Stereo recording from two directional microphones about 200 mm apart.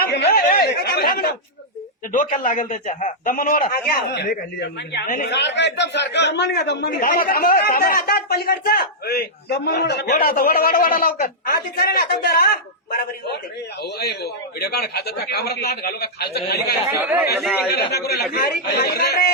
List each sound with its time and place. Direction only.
0.0 s a sound: 55° left (ahead or behind)
2.1 s a man's voice: 40° left (ahead or behind)
3.7 s a man's voice: 50° left (ahead or behind)
13.8 s a man's voice: 55° left (ahead or behind)
17.0 s speech: 5° right (ahead or behind)
17.7 s a man's voice: 55° left (ahead or behind)